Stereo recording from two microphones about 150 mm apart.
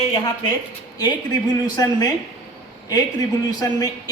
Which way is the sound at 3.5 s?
25° left (ahead or behind).